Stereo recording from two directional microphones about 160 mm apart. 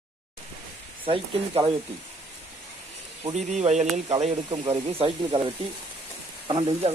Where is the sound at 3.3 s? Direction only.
45° right (ahead or behind).